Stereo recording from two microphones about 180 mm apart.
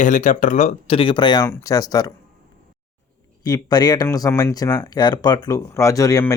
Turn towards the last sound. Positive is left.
turn(degrees=20)  # may be behind; listen again after turning